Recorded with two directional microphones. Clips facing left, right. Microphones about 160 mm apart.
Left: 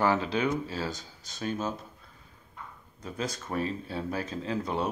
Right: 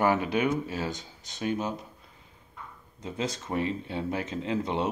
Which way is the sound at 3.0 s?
20° right (ahead or behind).